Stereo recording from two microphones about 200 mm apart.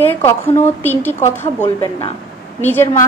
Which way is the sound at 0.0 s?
10° left (ahead or behind).